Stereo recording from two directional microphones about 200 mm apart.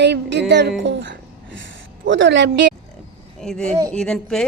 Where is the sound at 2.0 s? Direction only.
65° right (ahead or behind).